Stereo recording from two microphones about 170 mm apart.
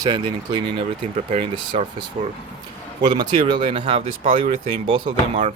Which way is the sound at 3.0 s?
25° right (ahead or behind).